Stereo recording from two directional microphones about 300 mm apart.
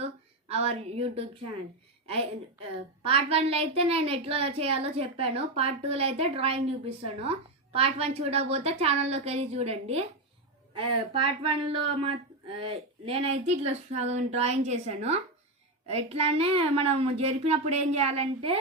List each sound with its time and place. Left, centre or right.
0.0 s a sound: right
2.7 s a woman's voice: centre
11.1 s a woman's voice: centre